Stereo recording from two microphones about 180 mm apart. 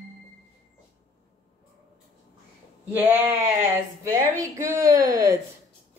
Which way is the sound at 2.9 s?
10° right (ahead or behind).